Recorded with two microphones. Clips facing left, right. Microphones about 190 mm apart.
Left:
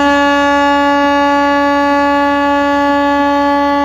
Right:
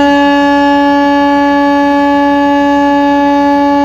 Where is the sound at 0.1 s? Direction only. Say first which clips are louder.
Right 4 dB; 30° right (ahead or behind).